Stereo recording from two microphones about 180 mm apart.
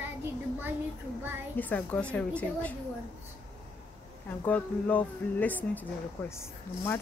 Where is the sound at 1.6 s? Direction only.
10° left (ahead or behind).